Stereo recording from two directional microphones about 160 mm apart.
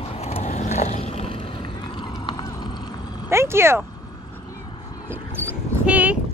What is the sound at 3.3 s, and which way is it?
Speech, 15° right (ahead or behind).